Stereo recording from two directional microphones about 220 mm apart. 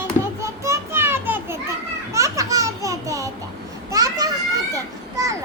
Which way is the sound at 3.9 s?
15° right (ahead or behind).